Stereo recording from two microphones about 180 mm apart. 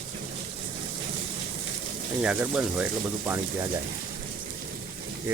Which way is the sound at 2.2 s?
10° right (ahead or behind).